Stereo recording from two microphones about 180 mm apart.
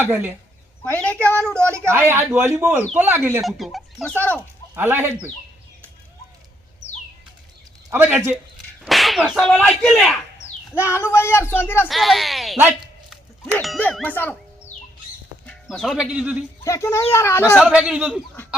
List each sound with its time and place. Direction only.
0.0 s speech: 10° right (ahead or behind)
0.9 s speech: 5° left (ahead or behind)
1.6 s speech: 15° right (ahead or behind)
3.4 s whip: centre (ahead or behind)
4.7 s speech: 10° right (ahead or behind)
7.9 s speech: 15° right (ahead or behind)
8.8 s whip: centre (ahead or behind)
10.8 s speech: 15° left (ahead or behind)
11.9 s whip: centre (ahead or behind)
12.5 s a sound: 10° right (ahead or behind)
13.4 s speech: 5° left (ahead or behind)
15.4 s speech: centre (ahead or behind)
16.6 s speech: 15° left (ahead or behind)
17.6 s whip: 5° right (ahead or behind)